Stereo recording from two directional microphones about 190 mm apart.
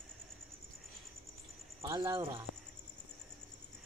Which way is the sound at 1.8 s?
20° right (ahead or behind).